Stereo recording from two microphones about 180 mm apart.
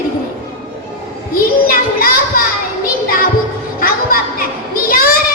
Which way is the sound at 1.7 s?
50° left (ahead or behind).